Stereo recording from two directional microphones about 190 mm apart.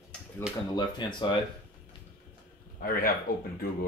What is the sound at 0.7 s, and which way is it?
Speech, 25° left (ahead or behind).